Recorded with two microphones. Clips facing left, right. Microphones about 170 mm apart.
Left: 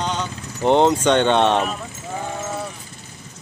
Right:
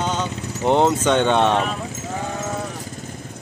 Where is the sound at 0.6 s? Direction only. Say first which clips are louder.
Left 2 dB; 5° right (ahead or behind).